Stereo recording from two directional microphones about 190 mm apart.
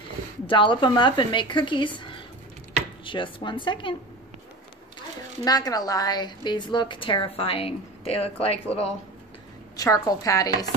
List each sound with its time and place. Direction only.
0.5 s a woman's voice: 25° left (ahead or behind)
5.4 s a woman's voice: 20° left (ahead or behind)
9.8 s a woman's voice: 20° left (ahead or behind)